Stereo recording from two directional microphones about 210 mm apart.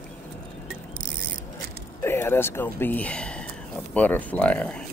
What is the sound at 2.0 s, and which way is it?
Speech, 10° left (ahead or behind).